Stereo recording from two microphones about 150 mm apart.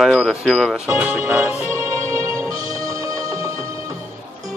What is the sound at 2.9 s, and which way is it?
Music, 20° right (ahead or behind).